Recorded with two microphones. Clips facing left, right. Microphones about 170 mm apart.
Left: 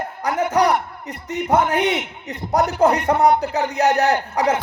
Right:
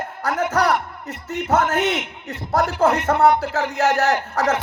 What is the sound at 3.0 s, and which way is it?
A man's voice, 15° left (ahead or behind).